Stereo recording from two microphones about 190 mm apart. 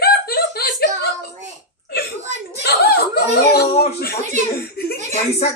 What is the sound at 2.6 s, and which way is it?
Speech, 55° left (ahead or behind).